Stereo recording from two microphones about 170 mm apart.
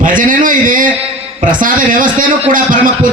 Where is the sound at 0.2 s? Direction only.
50° right (ahead or behind).